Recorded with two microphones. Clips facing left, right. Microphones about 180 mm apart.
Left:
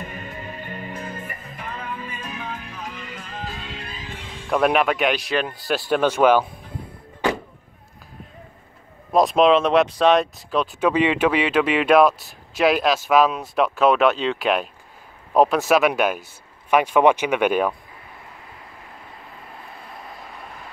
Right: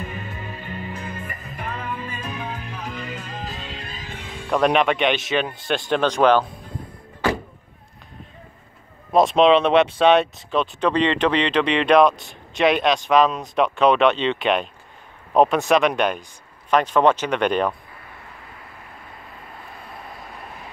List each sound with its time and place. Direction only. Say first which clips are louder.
0.0 s music: right 1 dB; 45° left (ahead or behind)
2.2 s music: right 2 dB; 35° right (ahead or behind)
4.5 s speech: right 1 dB; 5° left (ahead or behind)
9.1 s speech: right 1 dB; centre (ahead or behind)